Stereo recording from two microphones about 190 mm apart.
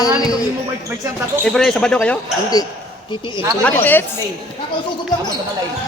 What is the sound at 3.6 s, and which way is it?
Speech, 10° left (ahead or behind).